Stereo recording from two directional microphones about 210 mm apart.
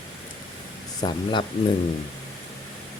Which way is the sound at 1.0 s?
20° left (ahead or behind).